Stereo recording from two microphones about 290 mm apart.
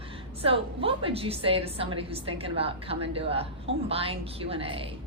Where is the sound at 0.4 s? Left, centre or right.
Centre.